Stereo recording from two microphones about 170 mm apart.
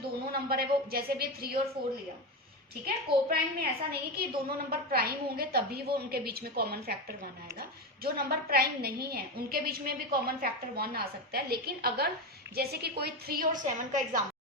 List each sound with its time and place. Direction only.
0.3 s a woman's voice: 60° right (ahead or behind)
1.8 s speech: 30° right (ahead or behind)
2.8 s a woman's voice: 60° right (ahead or behind)